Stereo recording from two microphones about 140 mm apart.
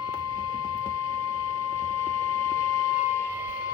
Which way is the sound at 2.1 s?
20° left (ahead or behind).